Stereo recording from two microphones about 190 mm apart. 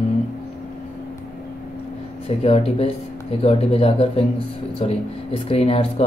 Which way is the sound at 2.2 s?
30° left (ahead or behind).